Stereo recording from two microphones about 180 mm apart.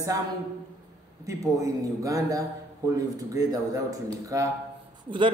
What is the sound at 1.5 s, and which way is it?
A man's voice, 20° right (ahead or behind).